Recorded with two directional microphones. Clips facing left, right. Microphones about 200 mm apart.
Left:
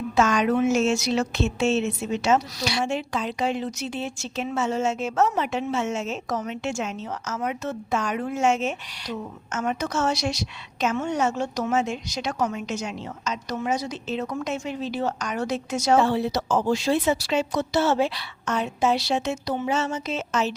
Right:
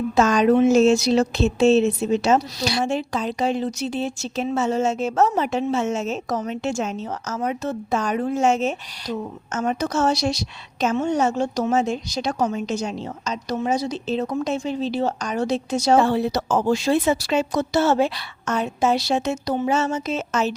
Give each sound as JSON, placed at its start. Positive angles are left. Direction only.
{"t": 0.2, "sound": "speech", "side_deg": -35}
{"t": 16.0, "sound": "speech", "side_deg": -50}